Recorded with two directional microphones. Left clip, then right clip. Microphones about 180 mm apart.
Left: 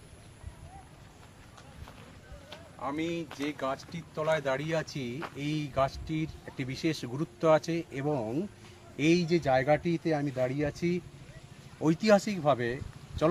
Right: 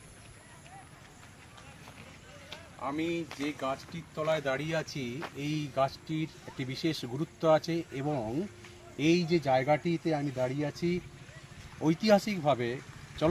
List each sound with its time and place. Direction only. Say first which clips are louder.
2.5 s speech: even; centre (ahead or behind)
12.0 s speech: left 1 dB; centre (ahead or behind)